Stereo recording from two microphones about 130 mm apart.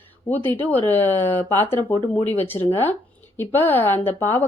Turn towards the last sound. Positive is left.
turn(degrees=15)  # may be behind; listen again after turning